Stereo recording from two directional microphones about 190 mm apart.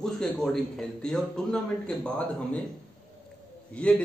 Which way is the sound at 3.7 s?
5° left (ahead or behind).